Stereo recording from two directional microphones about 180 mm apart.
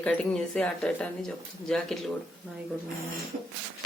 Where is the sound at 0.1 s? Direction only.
25° right (ahead or behind).